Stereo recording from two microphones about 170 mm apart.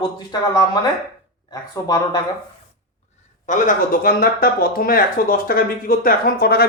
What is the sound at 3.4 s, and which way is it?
Speech, 55° left (ahead or behind).